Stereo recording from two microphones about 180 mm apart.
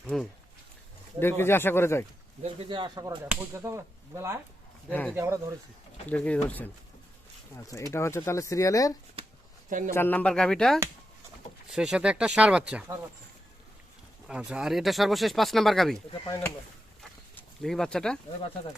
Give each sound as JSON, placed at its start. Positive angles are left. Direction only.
{"t": 0.1, "sound": "speech", "side_deg": 0}
{"t": 1.2, "sound": "speech", "side_deg": 10}
{"t": 2.4, "sound": "speech", "side_deg": -30}
{"t": 3.2, "sound": "whip", "side_deg": -15}
{"t": 4.9, "sound": "speech", "side_deg": 10}
{"t": 5.1, "sound": "whip", "side_deg": -15}
{"t": 6.1, "sound": "speech", "side_deg": 5}
{"t": 9.6, "sound": "a man's voice", "side_deg": -50}
{"t": 9.9, "sound": "speech", "side_deg": 10}
{"t": 14.3, "sound": "speech", "side_deg": -5}
{"t": 17.0, "sound": "a sound", "side_deg": 0}